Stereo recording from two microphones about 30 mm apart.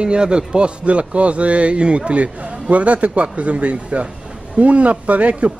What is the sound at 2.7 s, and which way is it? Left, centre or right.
A man's voice, right.